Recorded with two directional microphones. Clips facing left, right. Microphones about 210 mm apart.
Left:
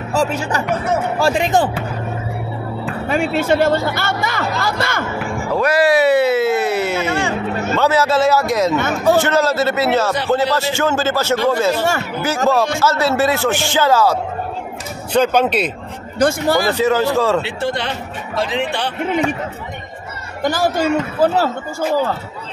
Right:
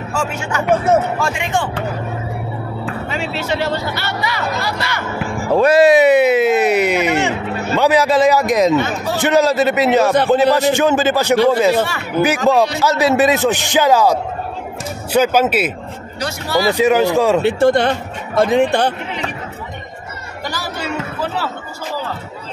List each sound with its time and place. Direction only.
0.1 s speech: 35° left (ahead or behind)
3.1 s speech: 50° left (ahead or behind)
5.5 s speech: 25° right (ahead or behind)
8.7 s speech: 50° left (ahead or behind)
9.2 s speech: 15° right (ahead or behind)
12.7 s a man's voice: 15° right (ahead or behind)
16.2 s speech: 50° left (ahead or behind)
16.7 s speech: 15° right (ahead or behind)
17.4 s speech: 50° right (ahead or behind)
20.4 s speech: 50° left (ahead or behind)